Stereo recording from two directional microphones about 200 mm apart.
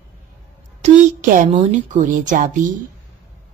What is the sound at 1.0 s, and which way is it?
Speech, 40° right (ahead or behind).